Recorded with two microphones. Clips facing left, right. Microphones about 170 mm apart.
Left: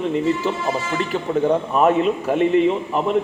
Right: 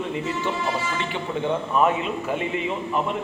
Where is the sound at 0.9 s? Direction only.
40° left (ahead or behind).